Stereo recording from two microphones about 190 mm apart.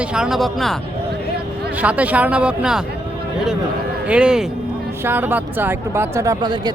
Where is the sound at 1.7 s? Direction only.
5° right (ahead or behind).